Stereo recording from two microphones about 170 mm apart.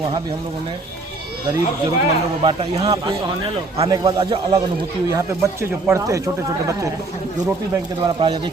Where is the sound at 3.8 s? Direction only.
25° right (ahead or behind).